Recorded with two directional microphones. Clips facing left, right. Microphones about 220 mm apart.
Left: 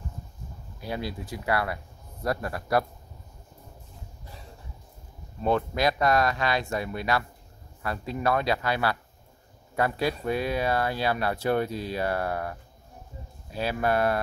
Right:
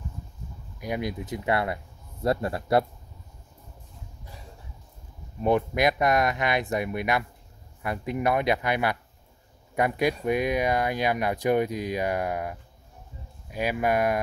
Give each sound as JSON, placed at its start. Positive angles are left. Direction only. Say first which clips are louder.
{"t": 0.7, "sound": "speech", "louder": "right 3 dB", "side_deg": -15}
{"t": 5.4, "sound": "speech", "louder": "right 2 dB", "side_deg": -15}